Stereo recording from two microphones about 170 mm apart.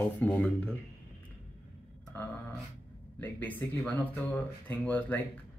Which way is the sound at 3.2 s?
10° left (ahead or behind).